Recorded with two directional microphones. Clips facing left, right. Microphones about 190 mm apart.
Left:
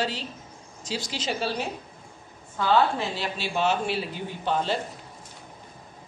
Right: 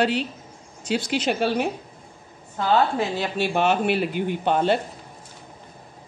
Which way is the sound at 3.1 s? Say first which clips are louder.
Right 6 dB; 50° right (ahead or behind).